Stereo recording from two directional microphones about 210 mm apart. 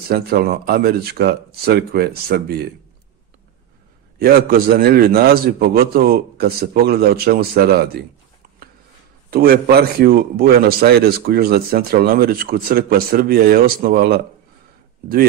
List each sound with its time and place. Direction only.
0.1 s speech: 45° right (ahead or behind)
4.2 s speech: 45° right (ahead or behind)
9.3 s speech: 45° right (ahead or behind)